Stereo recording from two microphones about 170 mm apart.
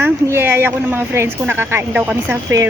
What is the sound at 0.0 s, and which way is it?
Speech, 15° right (ahead or behind).